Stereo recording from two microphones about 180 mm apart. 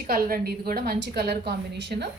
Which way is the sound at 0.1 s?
55° right (ahead or behind).